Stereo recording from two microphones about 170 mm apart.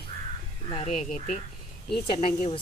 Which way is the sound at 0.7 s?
35° left (ahead or behind).